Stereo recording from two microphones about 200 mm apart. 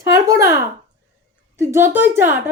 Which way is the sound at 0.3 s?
15° right (ahead or behind).